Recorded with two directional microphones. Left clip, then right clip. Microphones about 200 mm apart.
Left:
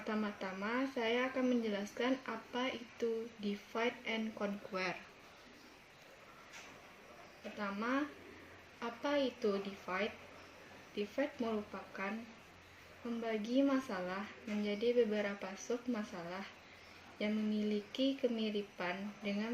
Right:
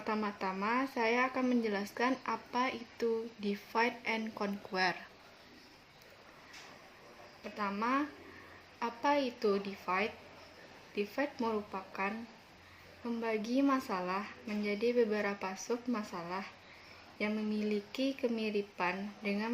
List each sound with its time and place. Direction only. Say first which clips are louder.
0.0 s speech: right 5 dB; 55° right (ahead or behind)
7.6 s a woman's voice: right 5 dB; 50° right (ahead or behind)
13.2 s speech: right 2 dB; 55° right (ahead or behind)